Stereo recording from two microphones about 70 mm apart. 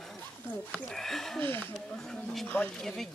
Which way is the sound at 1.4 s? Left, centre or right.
Left.